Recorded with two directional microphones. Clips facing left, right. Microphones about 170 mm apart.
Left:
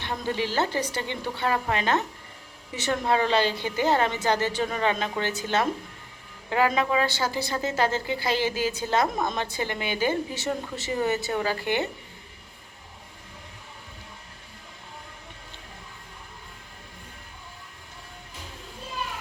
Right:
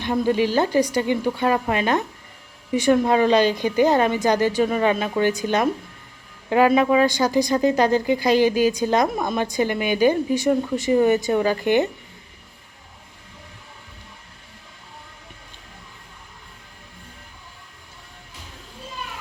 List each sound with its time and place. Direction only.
0.0 s speech: 15° right (ahead or behind)